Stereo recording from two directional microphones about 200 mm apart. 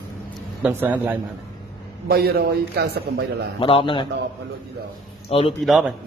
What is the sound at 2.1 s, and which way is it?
Speech, 50° right (ahead or behind).